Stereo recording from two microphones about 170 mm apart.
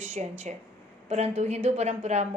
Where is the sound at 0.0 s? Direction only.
40° right (ahead or behind).